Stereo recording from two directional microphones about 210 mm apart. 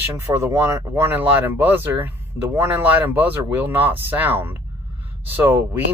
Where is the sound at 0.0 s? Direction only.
10° right (ahead or behind).